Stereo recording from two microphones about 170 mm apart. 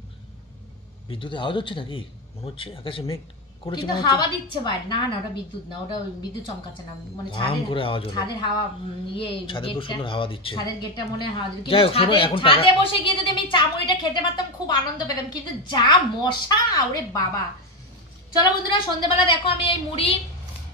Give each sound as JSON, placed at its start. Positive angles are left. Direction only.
{"t": 1.0, "sound": "a woman's voice", "side_deg": 30}
{"t": 7.2, "sound": "speech", "side_deg": 30}
{"t": 18.7, "sound": "speech", "side_deg": 30}